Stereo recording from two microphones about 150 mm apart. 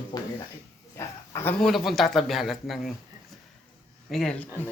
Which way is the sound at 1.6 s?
Centre (ahead or behind).